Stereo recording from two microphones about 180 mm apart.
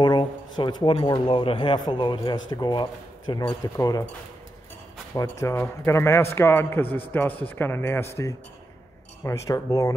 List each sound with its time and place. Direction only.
0.0 s speech: 25° left (ahead or behind)
5.1 s a man's voice: 15° left (ahead or behind)